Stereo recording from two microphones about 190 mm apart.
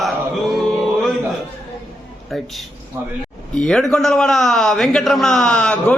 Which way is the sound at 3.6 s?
5° left (ahead or behind).